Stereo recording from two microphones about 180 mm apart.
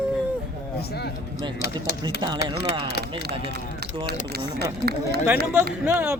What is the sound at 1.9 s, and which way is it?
Music, 65° left (ahead or behind).